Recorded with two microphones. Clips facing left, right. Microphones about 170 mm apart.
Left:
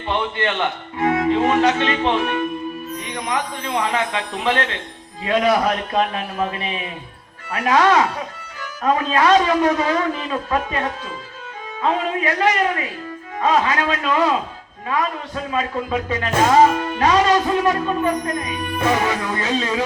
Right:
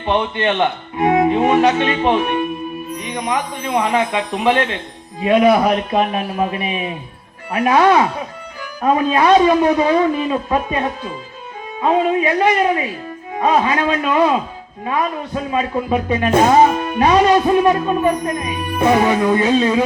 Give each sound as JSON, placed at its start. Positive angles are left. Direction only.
{"t": 0.0, "sound": "a man's voice", "side_deg": -20}
{"t": 15.5, "sound": "speech", "side_deg": -15}